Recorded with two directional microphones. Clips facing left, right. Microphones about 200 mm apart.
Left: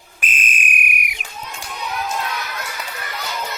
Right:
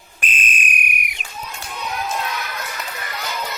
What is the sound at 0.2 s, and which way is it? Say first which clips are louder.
Whistle: even; 5° left (ahead or behind).